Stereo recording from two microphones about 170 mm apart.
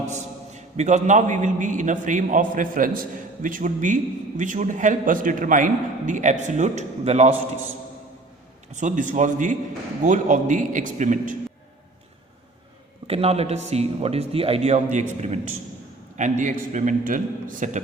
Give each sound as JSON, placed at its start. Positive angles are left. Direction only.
{"t": 0.1, "sound": "a man's voice", "side_deg": -45}
{"t": 8.7, "sound": "a man's voice", "side_deg": -45}
{"t": 13.1, "sound": "a man's voice", "side_deg": -35}